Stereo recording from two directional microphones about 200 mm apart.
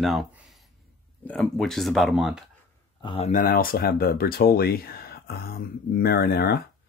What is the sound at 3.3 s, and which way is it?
Speech, 45° left (ahead or behind).